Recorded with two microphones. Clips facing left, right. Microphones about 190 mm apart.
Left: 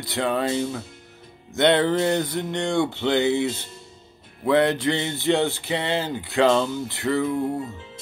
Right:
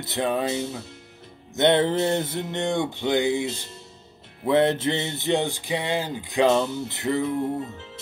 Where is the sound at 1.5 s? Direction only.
20° right (ahead or behind).